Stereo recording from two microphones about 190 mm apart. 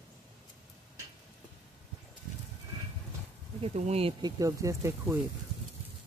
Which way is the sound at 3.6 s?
35° right (ahead or behind).